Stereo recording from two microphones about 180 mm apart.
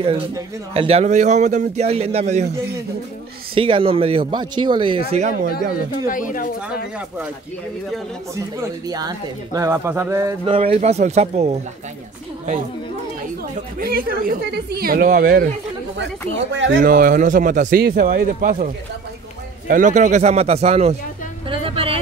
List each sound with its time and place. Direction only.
0.0 s a man's voice: 30° right (ahead or behind)
3.5 s a man's voice: 30° right (ahead or behind)
6.0 s speech: 50° left (ahead or behind)
8.8 s speech: 20° right (ahead or behind)
10.4 s a man's voice: 30° right (ahead or behind)
13.4 s speech: 55° right (ahead or behind)
16.5 s speech: 90° right
16.8 s speech: 55° right (ahead or behind)
19.7 s a man's voice: 45° right (ahead or behind)
21.5 s vehicle: 30° right (ahead or behind)